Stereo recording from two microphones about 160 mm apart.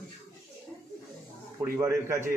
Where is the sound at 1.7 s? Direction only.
15° right (ahead or behind).